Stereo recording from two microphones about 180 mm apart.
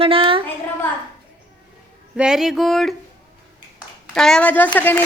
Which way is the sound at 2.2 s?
5° right (ahead or behind).